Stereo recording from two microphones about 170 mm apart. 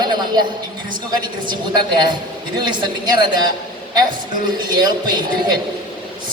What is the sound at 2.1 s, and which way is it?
Speech, 25° right (ahead or behind).